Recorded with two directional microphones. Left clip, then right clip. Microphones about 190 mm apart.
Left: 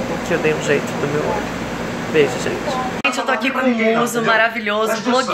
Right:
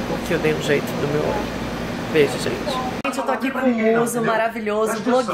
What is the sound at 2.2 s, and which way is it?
Speech, 5° right (ahead or behind).